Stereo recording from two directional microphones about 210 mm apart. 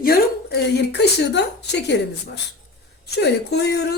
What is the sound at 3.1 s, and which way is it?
Speech, 50° left (ahead or behind).